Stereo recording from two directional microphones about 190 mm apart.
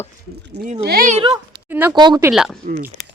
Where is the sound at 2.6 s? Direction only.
45° right (ahead or behind).